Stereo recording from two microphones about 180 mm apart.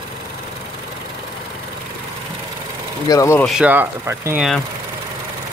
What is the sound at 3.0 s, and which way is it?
Speech, 15° left (ahead or behind).